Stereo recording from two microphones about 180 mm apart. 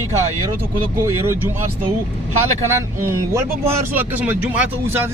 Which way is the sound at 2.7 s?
15° right (ahead or behind).